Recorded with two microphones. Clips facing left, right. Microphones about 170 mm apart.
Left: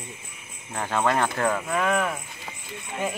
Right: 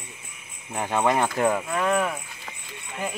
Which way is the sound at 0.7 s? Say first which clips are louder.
Right 1 dB; 15° right (ahead or behind).